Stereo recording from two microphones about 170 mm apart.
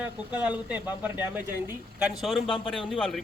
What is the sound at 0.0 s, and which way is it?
A man's voice, 10° right (ahead or behind).